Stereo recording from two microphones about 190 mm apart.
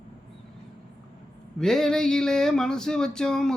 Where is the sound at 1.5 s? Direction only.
Centre (ahead or behind).